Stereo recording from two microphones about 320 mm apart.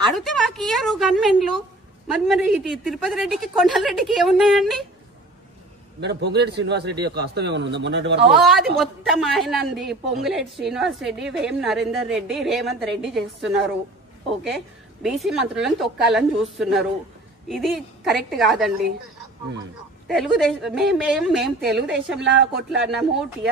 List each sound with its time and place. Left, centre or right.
0.1 s a woman's voice: centre
5.9 s a man's voice: right
8.3 s a woman's voice: centre
15.0 s a woman's voice: centre
20.1 s a woman's voice: centre
22.2 s a man's voice: right
22.7 s a woman's voice: centre